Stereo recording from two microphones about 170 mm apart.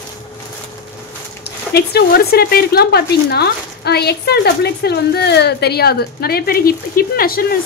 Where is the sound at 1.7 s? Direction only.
70° left (ahead or behind).